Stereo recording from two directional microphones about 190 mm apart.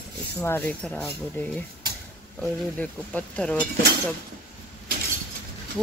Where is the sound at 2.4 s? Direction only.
5° left (ahead or behind).